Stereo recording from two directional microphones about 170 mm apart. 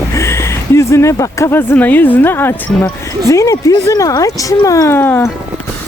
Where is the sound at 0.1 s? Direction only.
15° left (ahead or behind).